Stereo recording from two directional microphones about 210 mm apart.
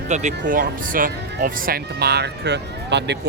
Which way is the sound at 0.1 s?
35° right (ahead or behind).